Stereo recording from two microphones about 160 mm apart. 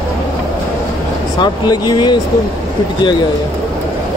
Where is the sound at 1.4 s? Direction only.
25° left (ahead or behind).